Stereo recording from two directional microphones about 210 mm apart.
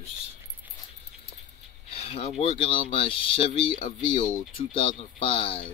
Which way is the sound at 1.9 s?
30° left (ahead or behind).